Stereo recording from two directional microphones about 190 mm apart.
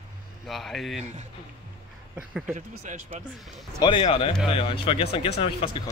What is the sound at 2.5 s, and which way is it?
Speech, 40° right (ahead or behind).